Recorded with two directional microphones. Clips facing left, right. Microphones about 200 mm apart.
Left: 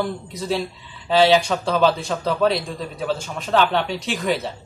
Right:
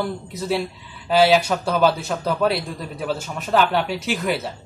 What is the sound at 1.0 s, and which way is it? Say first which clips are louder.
Speech: even; 5° right (ahead or behind).